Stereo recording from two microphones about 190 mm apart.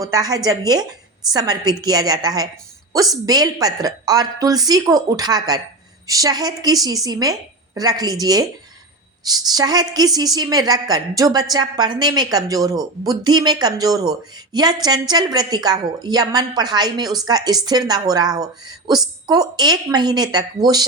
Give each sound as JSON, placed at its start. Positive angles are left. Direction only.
{"t": 0.0, "sound": "a woman's voice", "side_deg": -20}